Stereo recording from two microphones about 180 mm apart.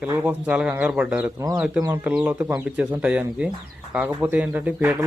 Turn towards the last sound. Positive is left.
turn(degrees=-10)  # may be behind; listen again after turning